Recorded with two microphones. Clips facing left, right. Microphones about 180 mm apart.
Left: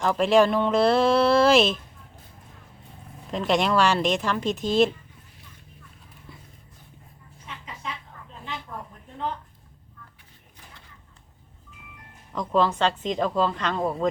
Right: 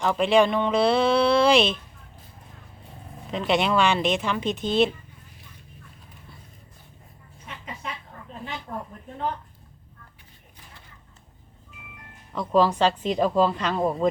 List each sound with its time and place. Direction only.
0.0 s speech: centre (ahead or behind)
3.3 s speech: centre (ahead or behind)
7.4 s a sound: 50° right (ahead or behind)
12.3 s a woman's voice: 5° right (ahead or behind)